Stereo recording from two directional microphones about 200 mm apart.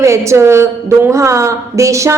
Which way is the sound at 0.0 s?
15° right (ahead or behind).